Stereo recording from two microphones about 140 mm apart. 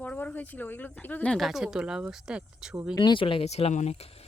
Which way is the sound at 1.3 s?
Centre (ahead or behind).